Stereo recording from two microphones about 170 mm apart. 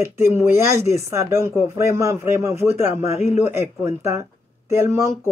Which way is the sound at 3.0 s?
40° left (ahead or behind).